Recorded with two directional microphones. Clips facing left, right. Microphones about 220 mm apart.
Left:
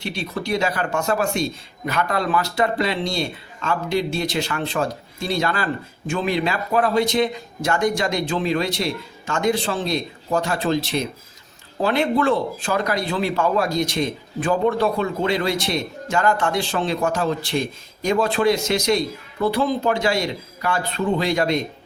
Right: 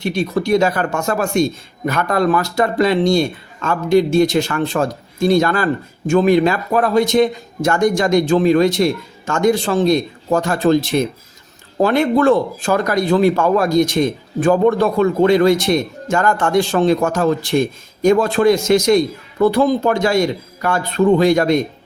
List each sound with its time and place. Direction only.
0.0 s speech: 45° right (ahead or behind)